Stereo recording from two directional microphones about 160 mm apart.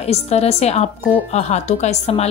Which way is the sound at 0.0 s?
40° left (ahead or behind).